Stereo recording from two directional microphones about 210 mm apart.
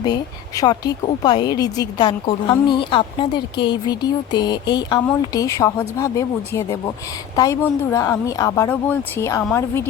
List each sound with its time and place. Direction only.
0.0 s speech: 20° left (ahead or behind)